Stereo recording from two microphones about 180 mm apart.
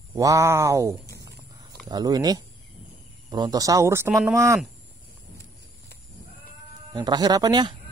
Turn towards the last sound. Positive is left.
turn(degrees=-25)  # may be behind; listen again after turning